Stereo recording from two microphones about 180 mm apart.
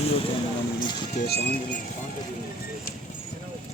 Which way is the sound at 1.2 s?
60° left (ahead or behind).